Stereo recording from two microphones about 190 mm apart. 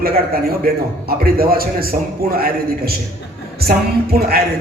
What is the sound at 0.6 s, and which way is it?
A man's voice, 50° right (ahead or behind).